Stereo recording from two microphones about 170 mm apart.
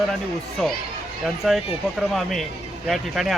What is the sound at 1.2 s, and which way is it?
Speech, centre (ahead or behind).